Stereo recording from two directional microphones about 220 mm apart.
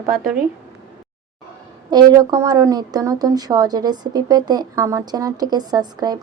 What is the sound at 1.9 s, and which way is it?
A woman's voice, 20° right (ahead or behind).